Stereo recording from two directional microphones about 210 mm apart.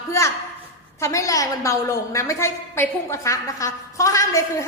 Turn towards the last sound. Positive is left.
turn(degrees=15)  # may be behind; listen again after turning